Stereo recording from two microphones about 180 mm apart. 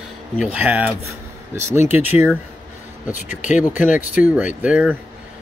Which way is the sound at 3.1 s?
45° left (ahead or behind).